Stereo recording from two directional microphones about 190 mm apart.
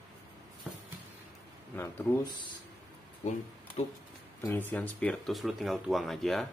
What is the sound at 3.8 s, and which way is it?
Speech, 35° left (ahead or behind).